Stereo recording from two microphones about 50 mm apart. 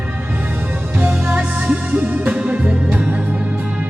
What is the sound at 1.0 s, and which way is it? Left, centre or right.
Music, right.